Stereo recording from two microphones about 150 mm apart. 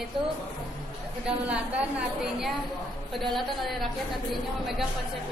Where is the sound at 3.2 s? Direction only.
Centre (ahead or behind).